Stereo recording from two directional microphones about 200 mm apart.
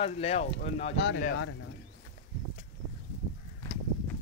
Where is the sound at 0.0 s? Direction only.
30° left (ahead or behind).